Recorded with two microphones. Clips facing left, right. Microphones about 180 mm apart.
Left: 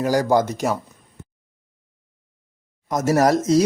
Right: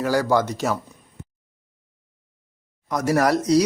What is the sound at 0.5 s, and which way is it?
Speech, 15° left (ahead or behind).